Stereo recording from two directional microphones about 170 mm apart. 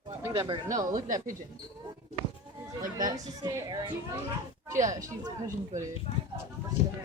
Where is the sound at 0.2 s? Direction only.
20° right (ahead or behind).